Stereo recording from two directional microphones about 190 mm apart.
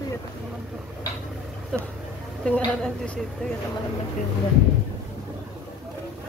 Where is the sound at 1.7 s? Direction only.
5° left (ahead or behind).